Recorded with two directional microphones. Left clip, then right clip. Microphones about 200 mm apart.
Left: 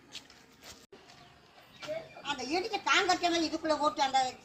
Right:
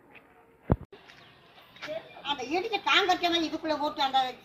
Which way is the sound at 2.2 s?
25° left (ahead or behind).